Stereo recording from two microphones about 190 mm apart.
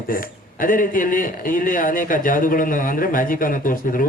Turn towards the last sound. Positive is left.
turn(degrees=45)  # may be behind; listen again after turning